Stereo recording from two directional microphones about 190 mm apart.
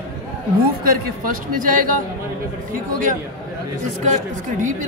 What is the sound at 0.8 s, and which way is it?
Speech, 50° right (ahead or behind).